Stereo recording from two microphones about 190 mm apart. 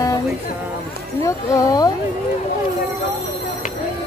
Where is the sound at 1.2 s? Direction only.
15° left (ahead or behind).